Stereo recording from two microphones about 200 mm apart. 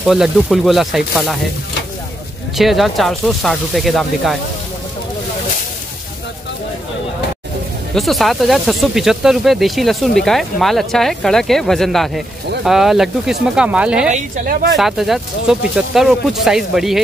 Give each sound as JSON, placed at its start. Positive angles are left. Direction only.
{"t": 0.0, "sound": "speech", "side_deg": 0}
{"t": 2.5, "sound": "speech", "side_deg": 0}
{"t": 7.9, "sound": "speech", "side_deg": 0}
{"t": 14.1, "sound": "speech", "side_deg": -45}
{"t": 14.8, "sound": "speech", "side_deg": 0}